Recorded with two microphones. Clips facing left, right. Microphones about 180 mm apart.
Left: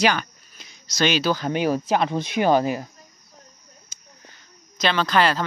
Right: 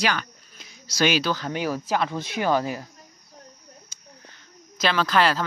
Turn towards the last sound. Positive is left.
turn(degrees=0)  # may be behind; listen again after turning